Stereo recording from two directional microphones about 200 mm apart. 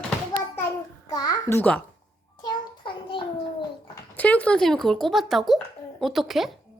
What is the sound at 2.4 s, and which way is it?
Child singing, 20° left (ahead or behind).